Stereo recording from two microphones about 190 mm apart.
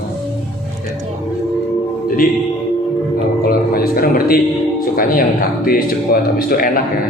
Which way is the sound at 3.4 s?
50° left (ahead or behind).